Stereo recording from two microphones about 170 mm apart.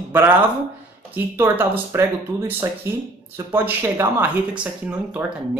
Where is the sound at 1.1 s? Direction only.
10° right (ahead or behind).